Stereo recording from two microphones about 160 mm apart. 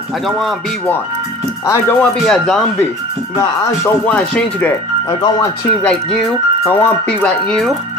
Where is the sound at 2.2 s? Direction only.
Centre (ahead or behind).